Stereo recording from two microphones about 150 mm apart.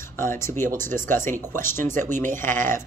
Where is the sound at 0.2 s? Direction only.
15° left (ahead or behind).